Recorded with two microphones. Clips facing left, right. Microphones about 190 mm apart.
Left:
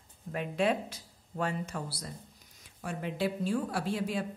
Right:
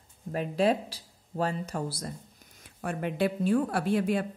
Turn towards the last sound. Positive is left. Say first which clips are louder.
# right 6 dB
turn(degrees=-60)  # may be behind; listen again after turning